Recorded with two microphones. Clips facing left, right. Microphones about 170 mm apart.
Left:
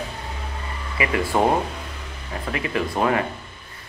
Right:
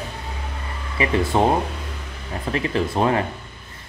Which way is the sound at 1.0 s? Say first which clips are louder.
Right 2 dB; 25° right (ahead or behind).